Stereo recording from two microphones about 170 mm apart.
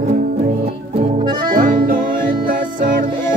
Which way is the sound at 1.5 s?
55° right (ahead or behind).